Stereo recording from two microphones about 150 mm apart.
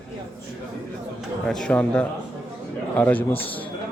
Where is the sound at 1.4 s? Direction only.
5° left (ahead or behind).